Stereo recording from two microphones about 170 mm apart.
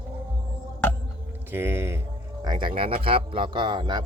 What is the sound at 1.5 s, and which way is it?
Speech, 15° right (ahead or behind).